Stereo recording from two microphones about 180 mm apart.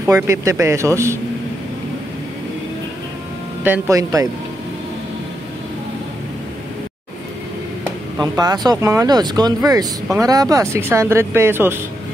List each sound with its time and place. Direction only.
0.0 s speech: 15° right (ahead or behind)
3.6 s speech: 10° right (ahead or behind)
8.2 s speech: 20° right (ahead or behind)